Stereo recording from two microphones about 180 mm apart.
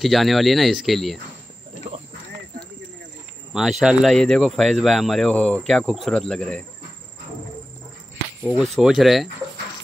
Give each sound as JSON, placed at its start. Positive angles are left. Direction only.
{"t": 0.0, "sound": "speech", "side_deg": 0}
{"t": 3.8, "sound": "speech", "side_deg": -5}
{"t": 8.5, "sound": "speech", "side_deg": 0}